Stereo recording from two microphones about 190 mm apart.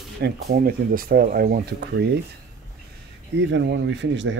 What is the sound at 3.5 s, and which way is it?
Speech, 70° right (ahead or behind).